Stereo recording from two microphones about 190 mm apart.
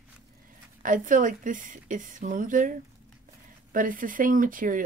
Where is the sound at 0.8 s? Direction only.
45° right (ahead or behind).